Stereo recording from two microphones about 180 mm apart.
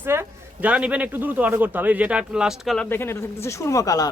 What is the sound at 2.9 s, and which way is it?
Speech, 15° left (ahead or behind).